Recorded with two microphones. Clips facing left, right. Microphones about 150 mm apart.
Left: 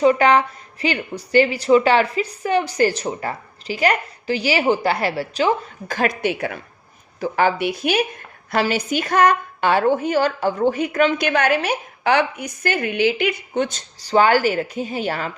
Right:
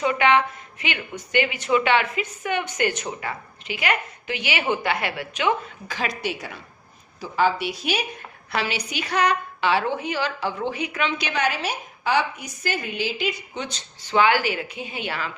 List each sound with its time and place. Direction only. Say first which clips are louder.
0.0 s a woman's voice: left 5 dB; 40° left (ahead or behind); by 8.0 s 55° left (ahead or behind)
8.4 s a woman's voice: left 7 dB; 45° left (ahead or behind)